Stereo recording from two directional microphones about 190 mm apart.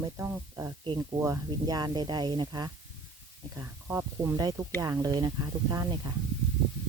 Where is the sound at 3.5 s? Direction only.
10° right (ahead or behind).